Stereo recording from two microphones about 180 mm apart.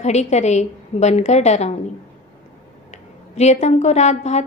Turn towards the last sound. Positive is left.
turn(degrees=40)  # may be behind; listen again after turning